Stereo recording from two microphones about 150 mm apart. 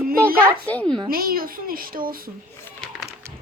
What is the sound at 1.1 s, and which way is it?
Speech, 75° right (ahead or behind).